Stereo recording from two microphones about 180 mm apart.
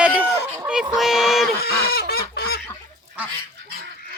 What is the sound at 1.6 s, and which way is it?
Goose, 60° left (ahead or behind).